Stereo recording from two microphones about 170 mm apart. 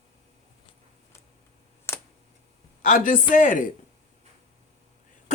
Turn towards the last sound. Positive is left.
turn(degrees=50)  # may be behind; listen again after turning